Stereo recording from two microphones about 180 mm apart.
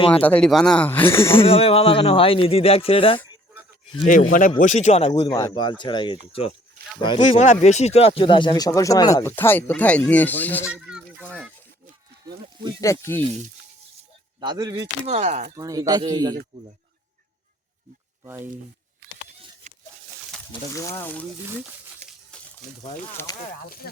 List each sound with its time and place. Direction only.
0.1 s speech: 10° left (ahead or behind)
1.5 s speech: 30° left (ahead or behind)
4.0 s speech: 50° left (ahead or behind)
5.3 s speech: 25° left (ahead or behind)
7.2 s speech: 40° left (ahead or behind); by 10.7 s 10° left (ahead or behind)
10.7 s a sound: 5° right (ahead or behind)
12.8 s speech: 15° left (ahead or behind)
14.4 s a man's voice: 20° right (ahead or behind)
15.0 s speech: 35° right (ahead or behind)
15.5 s a man's voice: 20° right (ahead or behind)
19.0 s a sound: 75° right (ahead or behind)
20.5 s speech: 15° left (ahead or behind)
23.1 s speech: 20° left (ahead or behind)
23.5 s speech: 55° left (ahead or behind)